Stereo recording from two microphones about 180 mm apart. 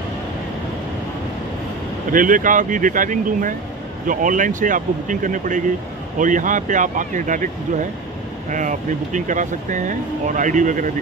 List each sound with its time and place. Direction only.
2.1 s speech: 50° right (ahead or behind)